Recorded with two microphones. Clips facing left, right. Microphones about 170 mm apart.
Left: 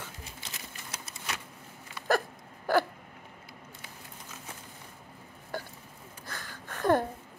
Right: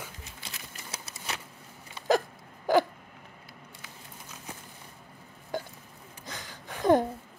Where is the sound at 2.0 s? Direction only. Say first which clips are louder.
Right 3 dB; 15° right (ahead or behind).